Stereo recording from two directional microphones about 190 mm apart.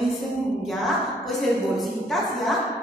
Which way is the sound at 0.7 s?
Centre (ahead or behind).